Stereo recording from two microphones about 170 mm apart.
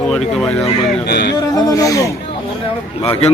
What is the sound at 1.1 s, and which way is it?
Speech, 75° left (ahead or behind).